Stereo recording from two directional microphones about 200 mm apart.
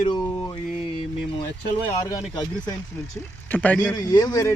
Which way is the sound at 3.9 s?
20° left (ahead or behind).